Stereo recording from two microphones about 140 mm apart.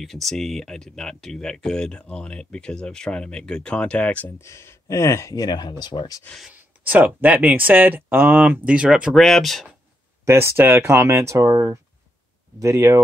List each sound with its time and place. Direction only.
0.0 s speech: centre (ahead or behind); by 6.2 s 30° left (ahead or behind)
6.2 s speech: centre (ahead or behind)
6.5 s speech: 10° right (ahead or behind)
10.2 s speech: 20° right (ahead or behind)